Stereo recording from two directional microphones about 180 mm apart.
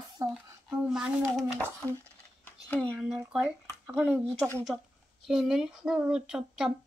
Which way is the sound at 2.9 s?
5° right (ahead or behind).